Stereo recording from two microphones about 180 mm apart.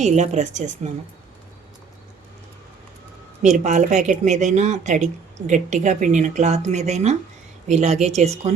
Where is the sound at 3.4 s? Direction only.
40° right (ahead or behind).